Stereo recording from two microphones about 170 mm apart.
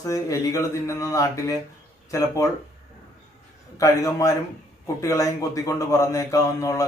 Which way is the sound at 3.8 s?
20° left (ahead or behind).